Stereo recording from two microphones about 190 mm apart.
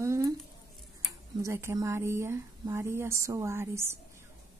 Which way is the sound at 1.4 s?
15° right (ahead or behind).